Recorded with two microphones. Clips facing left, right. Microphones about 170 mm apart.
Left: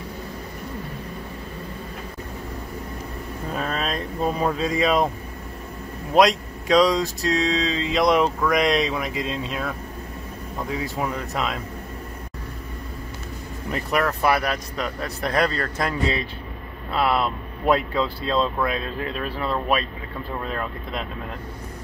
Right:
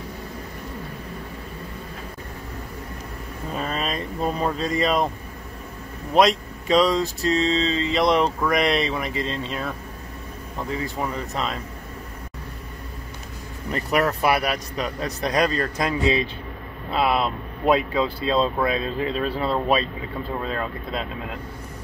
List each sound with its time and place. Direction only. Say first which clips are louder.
3.5 s speech: even; centre (ahead or behind)
6.1 s speech: left 1 dB; centre (ahead or behind)
10.8 s speech: left 1 dB; 5° left (ahead or behind)
13.7 s vehicle: right 1 dB; centre (ahead or behind)
14.0 s speech: even; 15° right (ahead or behind)